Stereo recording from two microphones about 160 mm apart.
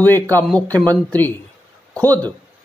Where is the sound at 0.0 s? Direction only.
10° left (ahead or behind).